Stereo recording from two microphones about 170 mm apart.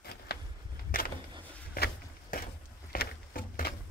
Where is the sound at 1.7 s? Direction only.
60° left (ahead or behind).